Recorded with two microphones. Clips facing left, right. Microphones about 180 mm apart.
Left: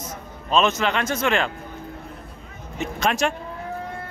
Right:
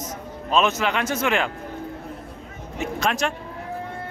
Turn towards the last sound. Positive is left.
turn(degrees=0)  # may be behind; listen again after turning